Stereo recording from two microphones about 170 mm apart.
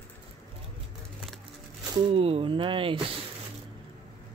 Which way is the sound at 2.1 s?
35° right (ahead or behind).